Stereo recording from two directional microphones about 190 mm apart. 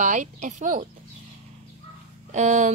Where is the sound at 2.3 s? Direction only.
40° right (ahead or behind).